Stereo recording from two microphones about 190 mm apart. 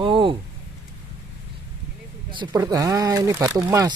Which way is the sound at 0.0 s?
25° right (ahead or behind).